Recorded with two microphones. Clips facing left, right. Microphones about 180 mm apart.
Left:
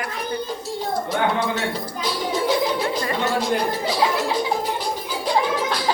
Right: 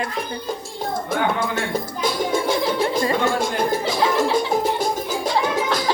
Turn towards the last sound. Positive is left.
turn(degrees=-50)  # may be behind; listen again after turning